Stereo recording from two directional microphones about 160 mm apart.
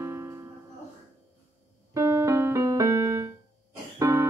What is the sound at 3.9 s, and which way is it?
Music, 20° right (ahead or behind).